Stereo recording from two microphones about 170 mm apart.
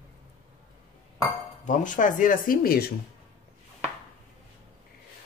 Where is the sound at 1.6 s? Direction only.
50° left (ahead or behind); by 2.9 s 65° left (ahead or behind).